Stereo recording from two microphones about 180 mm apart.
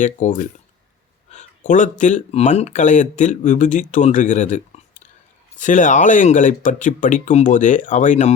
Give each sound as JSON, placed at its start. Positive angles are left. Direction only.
{"t": 0.0, "sound": "speech", "side_deg": 45}